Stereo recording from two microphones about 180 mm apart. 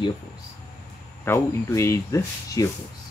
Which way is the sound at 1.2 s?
15° left (ahead or behind).